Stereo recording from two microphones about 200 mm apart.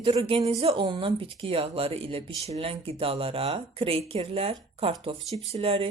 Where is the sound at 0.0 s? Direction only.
30° right (ahead or behind).